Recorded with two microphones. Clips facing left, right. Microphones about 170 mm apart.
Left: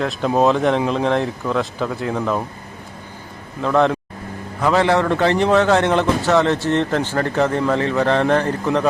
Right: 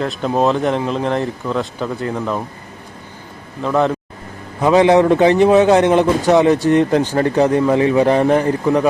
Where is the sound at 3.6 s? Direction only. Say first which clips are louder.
Even; centre (ahead or behind).